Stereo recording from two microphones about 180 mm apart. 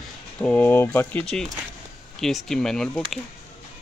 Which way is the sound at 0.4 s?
10° left (ahead or behind).